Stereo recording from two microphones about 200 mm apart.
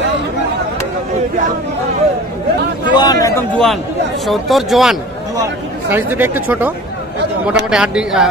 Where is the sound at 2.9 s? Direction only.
20° left (ahead or behind).